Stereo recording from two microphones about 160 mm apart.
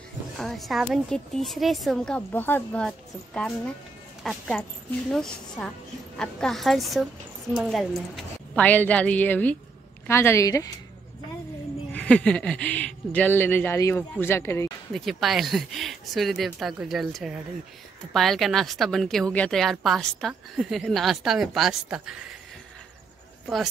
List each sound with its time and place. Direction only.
0.4 s a woman's voice: centre (ahead or behind); by 10.7 s 20° left (ahead or behind)
11.9 s speech: 10° left (ahead or behind)
14.9 s a woman's voice: centre (ahead or behind)